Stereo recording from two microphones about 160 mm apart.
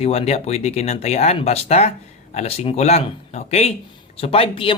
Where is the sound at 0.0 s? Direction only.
40° left (ahead or behind).